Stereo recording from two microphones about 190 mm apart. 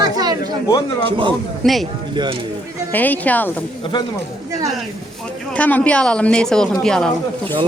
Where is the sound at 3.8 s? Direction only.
25° left (ahead or behind).